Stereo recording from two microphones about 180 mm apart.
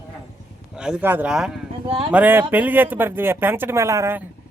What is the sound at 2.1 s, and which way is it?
Speech, 10° right (ahead or behind).